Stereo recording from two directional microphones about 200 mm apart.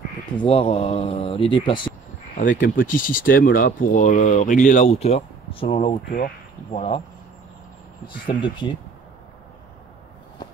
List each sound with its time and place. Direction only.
0.4 s speech: 30° left (ahead or behind)
2.3 s speech: 40° left (ahead or behind)
8.3 s speech: 25° left (ahead or behind)